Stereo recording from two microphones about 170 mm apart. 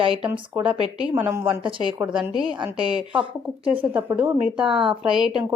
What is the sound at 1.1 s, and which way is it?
Speech, 10° right (ahead or behind).